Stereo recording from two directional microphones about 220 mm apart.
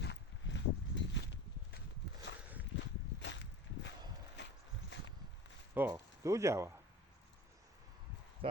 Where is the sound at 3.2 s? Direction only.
55° left (ahead or behind).